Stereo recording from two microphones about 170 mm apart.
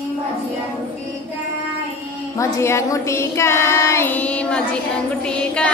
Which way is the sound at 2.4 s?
15° left (ahead or behind).